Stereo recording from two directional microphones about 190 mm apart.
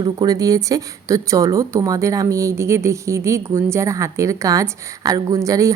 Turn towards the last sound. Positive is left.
turn(degrees=-15)  # may be behind; listen again after turning